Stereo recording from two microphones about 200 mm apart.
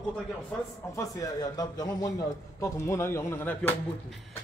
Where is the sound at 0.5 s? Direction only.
15° left (ahead or behind).